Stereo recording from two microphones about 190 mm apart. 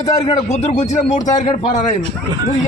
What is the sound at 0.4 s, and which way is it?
A man's voice, 35° left (ahead or behind).